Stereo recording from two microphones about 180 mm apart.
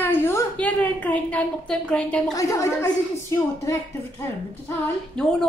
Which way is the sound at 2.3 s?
15° left (ahead or behind).